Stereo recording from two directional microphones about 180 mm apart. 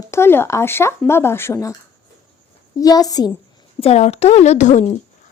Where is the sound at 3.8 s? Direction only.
35° left (ahead or behind).